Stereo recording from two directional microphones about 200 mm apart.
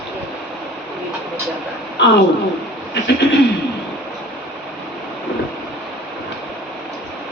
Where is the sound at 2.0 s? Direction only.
60° left (ahead or behind).